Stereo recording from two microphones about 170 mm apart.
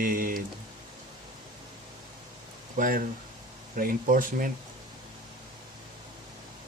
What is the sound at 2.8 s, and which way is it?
Speech, 55° right (ahead or behind).